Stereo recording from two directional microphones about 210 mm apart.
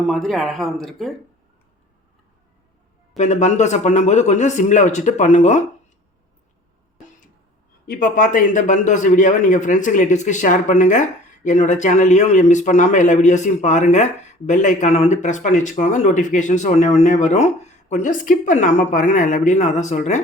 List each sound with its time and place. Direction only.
0.0 s speech: centre (ahead or behind)
3.2 s a man's voice: 35° left (ahead or behind)
7.9 s a man's voice: 45° left (ahead or behind)